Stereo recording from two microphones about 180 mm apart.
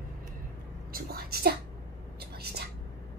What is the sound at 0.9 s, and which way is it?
Whispering, 55° right (ahead or behind).